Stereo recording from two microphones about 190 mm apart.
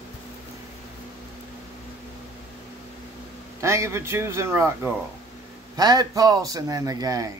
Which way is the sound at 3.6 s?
15° right (ahead or behind).